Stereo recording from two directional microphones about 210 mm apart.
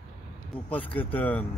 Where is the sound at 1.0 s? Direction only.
10° left (ahead or behind).